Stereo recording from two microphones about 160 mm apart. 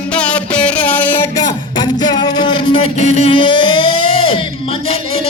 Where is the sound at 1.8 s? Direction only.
25° left (ahead or behind).